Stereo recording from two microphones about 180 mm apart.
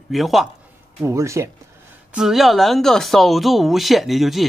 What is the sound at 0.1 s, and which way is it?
Speech, centre (ahead or behind).